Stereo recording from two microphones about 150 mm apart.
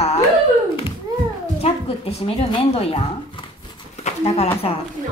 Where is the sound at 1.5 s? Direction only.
40° left (ahead or behind).